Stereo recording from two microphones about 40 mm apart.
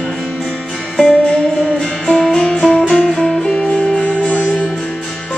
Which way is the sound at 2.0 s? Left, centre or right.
Centre.